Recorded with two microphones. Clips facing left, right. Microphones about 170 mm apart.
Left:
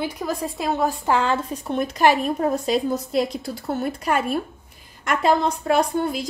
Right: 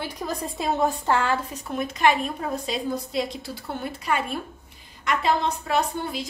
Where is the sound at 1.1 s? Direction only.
20° left (ahead or behind).